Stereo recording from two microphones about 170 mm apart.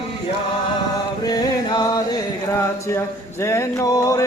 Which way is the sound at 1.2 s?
25° left (ahead or behind).